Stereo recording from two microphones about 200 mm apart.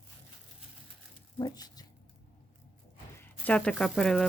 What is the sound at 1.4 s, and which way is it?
Speech, 20° left (ahead or behind).